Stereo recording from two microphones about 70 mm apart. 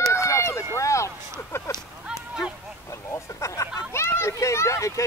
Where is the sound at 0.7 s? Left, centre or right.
Left.